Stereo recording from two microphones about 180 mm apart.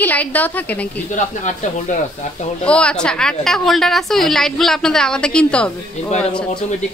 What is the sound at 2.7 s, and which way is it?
A woman's voice, 5° left (ahead or behind).